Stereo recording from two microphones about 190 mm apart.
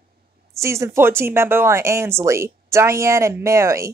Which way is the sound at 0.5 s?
15° right (ahead or behind).